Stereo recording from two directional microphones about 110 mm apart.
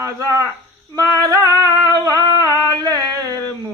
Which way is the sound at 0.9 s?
30° right (ahead or behind).